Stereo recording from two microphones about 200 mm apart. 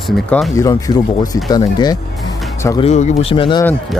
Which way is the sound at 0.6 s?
15° left (ahead or behind).